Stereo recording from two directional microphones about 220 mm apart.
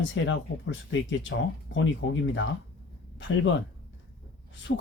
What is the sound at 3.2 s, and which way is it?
Speech, 60° left (ahead or behind).